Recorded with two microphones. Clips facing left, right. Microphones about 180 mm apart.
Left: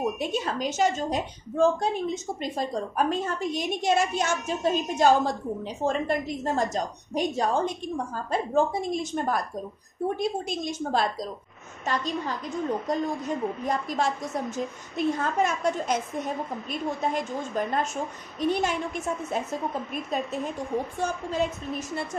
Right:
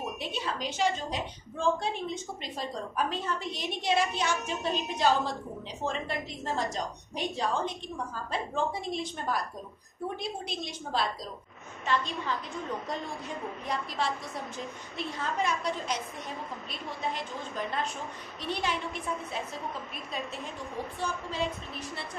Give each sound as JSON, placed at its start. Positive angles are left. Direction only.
{"t": 0.2, "sound": "a woman's voice", "side_deg": 45}
{"t": 17.0, "sound": "a woman's voice", "side_deg": 45}
{"t": 21.0, "sound": "a woman's voice", "side_deg": 45}